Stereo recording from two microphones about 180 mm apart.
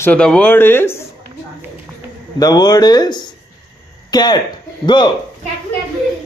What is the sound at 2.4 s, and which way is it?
Speech, 20° left (ahead or behind).